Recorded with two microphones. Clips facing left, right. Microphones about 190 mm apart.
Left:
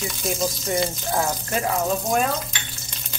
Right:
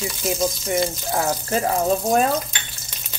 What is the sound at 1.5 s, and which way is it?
Speech, 35° right (ahead or behind).